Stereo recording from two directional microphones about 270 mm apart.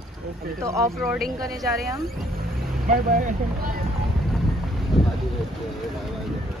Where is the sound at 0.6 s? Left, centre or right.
Centre.